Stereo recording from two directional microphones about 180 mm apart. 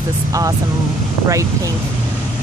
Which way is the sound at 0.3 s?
20° right (ahead or behind).